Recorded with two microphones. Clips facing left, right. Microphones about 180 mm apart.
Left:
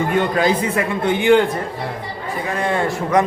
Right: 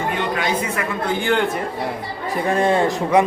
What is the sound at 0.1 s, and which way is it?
Speech, 40° left (ahead or behind).